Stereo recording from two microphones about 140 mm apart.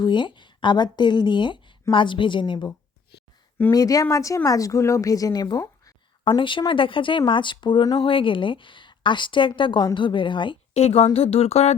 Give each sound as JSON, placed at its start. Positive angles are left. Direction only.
{"t": 0.0, "sound": "a woman's voice", "side_deg": 35}
{"t": 10.8, "sound": "speech", "side_deg": 45}